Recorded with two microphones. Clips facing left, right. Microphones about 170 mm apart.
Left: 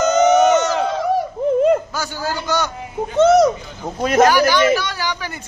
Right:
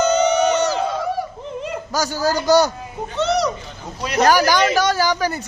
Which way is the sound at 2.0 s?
40° right (ahead or behind).